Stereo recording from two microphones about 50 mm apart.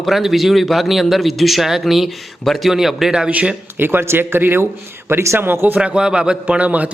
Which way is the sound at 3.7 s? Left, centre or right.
Right.